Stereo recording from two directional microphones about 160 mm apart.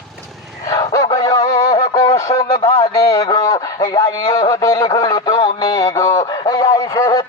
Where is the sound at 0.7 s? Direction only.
20° left (ahead or behind).